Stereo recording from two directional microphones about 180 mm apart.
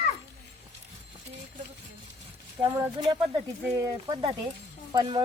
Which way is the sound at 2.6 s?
15° right (ahead or behind).